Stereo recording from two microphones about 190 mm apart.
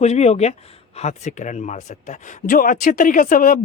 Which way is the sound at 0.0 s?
35° left (ahead or behind).